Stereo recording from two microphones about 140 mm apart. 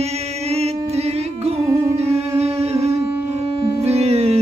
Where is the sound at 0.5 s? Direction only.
50° right (ahead or behind).